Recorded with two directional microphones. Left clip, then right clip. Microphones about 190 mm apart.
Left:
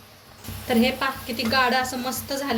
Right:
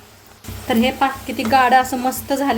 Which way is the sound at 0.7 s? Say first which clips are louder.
Right 5 dB; 40° right (ahead or behind).